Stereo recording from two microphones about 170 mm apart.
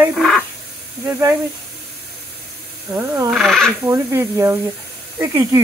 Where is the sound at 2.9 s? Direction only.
15° right (ahead or behind).